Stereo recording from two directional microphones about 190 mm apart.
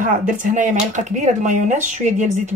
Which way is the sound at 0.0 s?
45° right (ahead or behind).